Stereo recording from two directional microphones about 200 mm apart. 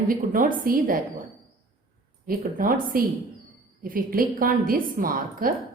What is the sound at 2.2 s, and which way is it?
A woman's voice, 45° right (ahead or behind).